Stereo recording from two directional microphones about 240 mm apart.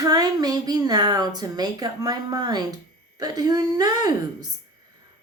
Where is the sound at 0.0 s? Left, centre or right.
Centre.